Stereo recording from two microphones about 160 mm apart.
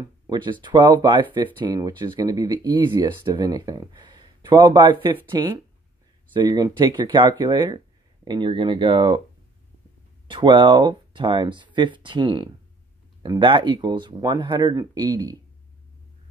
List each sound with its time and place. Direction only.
0.6 s speech: 30° right (ahead or behind)
10.2 s speech: 30° right (ahead or behind)